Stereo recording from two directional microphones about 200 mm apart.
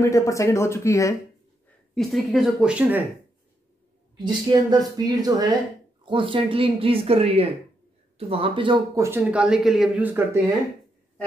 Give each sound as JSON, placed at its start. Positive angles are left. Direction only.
{"t": 0.0, "sound": "speech", "side_deg": 15}
{"t": 2.0, "sound": "speech", "side_deg": 0}
{"t": 4.2, "sound": "speech", "side_deg": -20}
{"t": 9.0, "sound": "speech", "side_deg": -10}